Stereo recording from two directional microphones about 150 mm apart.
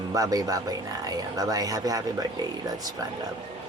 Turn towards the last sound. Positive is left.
turn(degrees=-25)  # may be behind; listen again after turning